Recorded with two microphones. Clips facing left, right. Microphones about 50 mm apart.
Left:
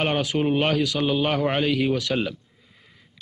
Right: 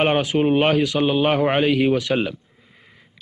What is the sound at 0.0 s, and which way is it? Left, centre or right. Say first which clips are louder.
A man's voice: right 5 dB; right.